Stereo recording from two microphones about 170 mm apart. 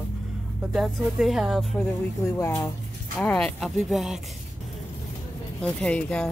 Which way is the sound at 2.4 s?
15° left (ahead or behind).